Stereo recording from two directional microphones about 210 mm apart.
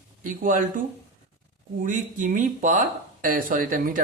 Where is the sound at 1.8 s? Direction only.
40° right (ahead or behind).